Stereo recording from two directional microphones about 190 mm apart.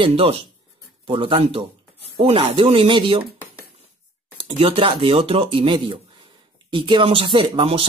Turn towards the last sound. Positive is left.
turn(degrees=-30)  # may be behind; listen again after turning